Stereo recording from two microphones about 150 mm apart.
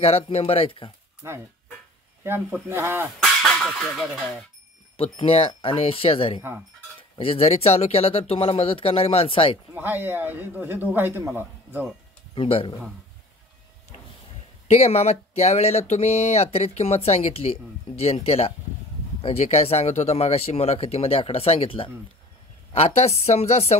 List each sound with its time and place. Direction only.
0.0 s speech: 40° left (ahead or behind)
2.2 s speech: 15° right (ahead or behind)
3.2 s speech: 5° left (ahead or behind)
4.9 s speech: 40° left (ahead or behind)
9.8 s speech: 15° right (ahead or behind)
12.4 s speech: 35° left (ahead or behind)
14.7 s speech: 45° left (ahead or behind)